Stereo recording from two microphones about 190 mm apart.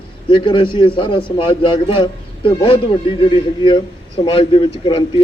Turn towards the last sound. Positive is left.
turn(degrees=25)  # may be behind; listen again after turning